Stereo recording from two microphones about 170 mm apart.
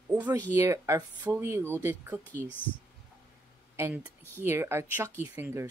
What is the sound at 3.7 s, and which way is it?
Speech, 10° right (ahead or behind).